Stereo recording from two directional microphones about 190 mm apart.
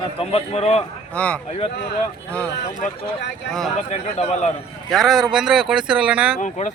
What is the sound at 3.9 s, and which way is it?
Speech, 35° left (ahead or behind).